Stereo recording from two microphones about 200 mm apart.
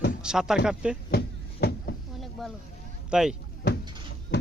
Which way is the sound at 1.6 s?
55° left (ahead or behind).